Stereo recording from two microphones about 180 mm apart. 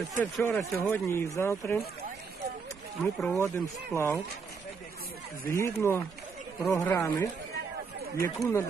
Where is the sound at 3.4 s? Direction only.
15° left (ahead or behind).